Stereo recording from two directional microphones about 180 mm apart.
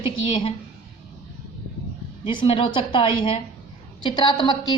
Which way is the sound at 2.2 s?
30° left (ahead or behind).